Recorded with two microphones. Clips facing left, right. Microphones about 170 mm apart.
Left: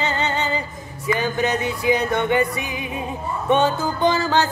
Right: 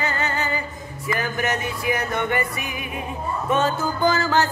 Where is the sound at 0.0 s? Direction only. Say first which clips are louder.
Left 2 dB; 25° left (ahead or behind).